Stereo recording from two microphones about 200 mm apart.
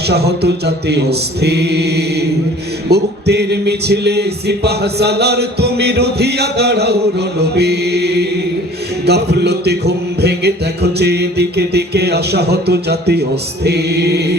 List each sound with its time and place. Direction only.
0.1 s music: 55° right (ahead or behind)